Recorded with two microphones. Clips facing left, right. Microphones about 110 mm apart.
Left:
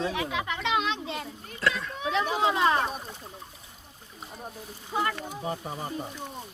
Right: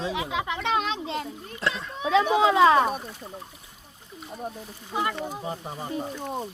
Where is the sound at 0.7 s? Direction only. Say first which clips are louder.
Right 1 dB; 35° right (ahead or behind).